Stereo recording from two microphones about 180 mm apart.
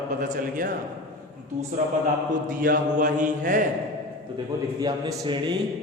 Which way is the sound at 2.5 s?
50° right (ahead or behind).